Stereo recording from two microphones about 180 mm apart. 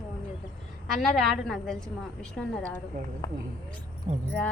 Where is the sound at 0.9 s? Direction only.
Centre (ahead or behind).